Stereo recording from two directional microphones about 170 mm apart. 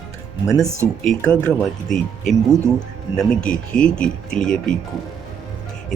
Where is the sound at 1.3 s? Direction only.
5° left (ahead or behind).